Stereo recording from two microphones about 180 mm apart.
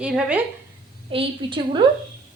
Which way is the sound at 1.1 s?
25° right (ahead or behind).